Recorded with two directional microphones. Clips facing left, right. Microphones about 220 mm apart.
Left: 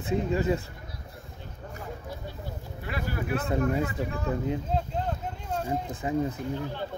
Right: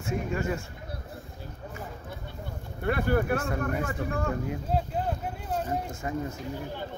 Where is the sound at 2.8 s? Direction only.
55° right (ahead or behind).